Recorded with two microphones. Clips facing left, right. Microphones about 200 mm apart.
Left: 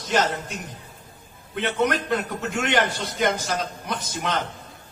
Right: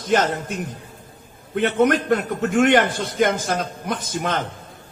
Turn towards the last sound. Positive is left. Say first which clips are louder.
# right 3 dB
turn(degrees=-50)  # may be behind; listen again after turning